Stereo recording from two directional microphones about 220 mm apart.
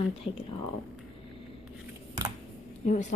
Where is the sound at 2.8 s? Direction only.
35° left (ahead or behind).